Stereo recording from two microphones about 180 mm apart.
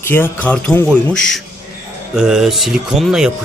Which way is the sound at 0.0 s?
10° left (ahead or behind).